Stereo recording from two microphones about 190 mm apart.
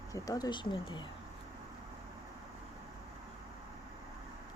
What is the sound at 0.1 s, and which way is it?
Speech, 20° left (ahead or behind).